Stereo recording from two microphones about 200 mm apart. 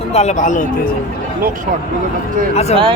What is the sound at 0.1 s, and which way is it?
Speech, 35° left (ahead or behind).